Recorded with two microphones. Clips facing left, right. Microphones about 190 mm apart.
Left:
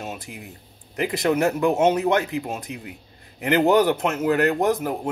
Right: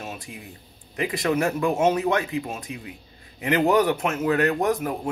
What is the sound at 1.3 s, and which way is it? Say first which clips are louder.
Speech: left 2 dB; 20° left (ahead or behind).